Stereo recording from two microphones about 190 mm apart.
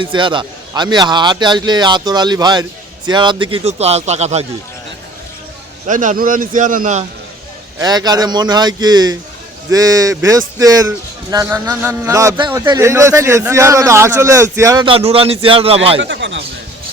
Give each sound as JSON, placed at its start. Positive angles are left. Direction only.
{"t": 0.0, "sound": "a man's voice", "side_deg": -25}
{"t": 5.9, "sound": "speech", "side_deg": -45}
{"t": 7.8, "sound": "a man's voice", "side_deg": -20}
{"t": 14.8, "sound": "a man's voice", "side_deg": -30}
{"t": 16.0, "sound": "speech", "side_deg": -70}